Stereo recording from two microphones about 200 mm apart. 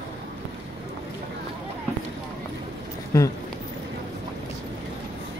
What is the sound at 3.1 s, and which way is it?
Speech, 15° left (ahead or behind).